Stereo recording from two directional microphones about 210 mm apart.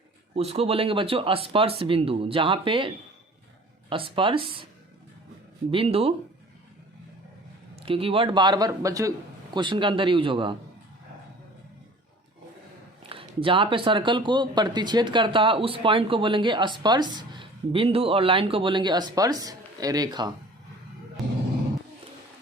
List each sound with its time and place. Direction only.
0.3 s speech: 30° right (ahead or behind)
5.7 s speech: 25° right (ahead or behind)
7.9 s speech: 25° right (ahead or behind)
13.0 s speech: 25° right (ahead or behind)
21.2 s a sound: centre (ahead or behind)